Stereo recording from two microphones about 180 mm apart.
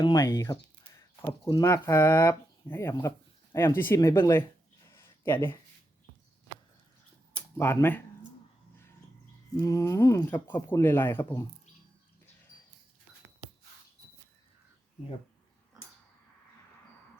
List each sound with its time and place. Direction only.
0.0 s speech: 15° left (ahead or behind)
4.9 s a sound: 15° left (ahead or behind)
7.3 s speech: 15° left (ahead or behind)
9.6 s speech: 15° left (ahead or behind)